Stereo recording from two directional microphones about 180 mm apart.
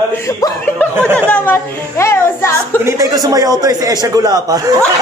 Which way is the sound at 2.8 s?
20° right (ahead or behind).